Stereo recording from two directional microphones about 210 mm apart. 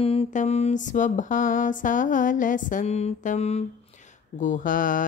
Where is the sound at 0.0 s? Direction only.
30° left (ahead or behind).